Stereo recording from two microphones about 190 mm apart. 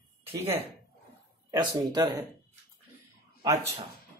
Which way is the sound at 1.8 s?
20° right (ahead or behind).